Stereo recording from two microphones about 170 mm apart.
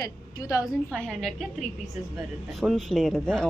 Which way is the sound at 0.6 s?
5° left (ahead or behind).